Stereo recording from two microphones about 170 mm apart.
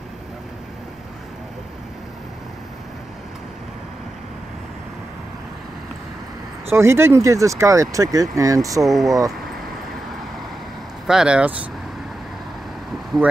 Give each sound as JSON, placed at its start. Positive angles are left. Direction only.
{"t": 6.7, "sound": "speech", "side_deg": -15}
{"t": 8.8, "sound": "speech", "side_deg": 0}
{"t": 11.1, "sound": "speech", "side_deg": -5}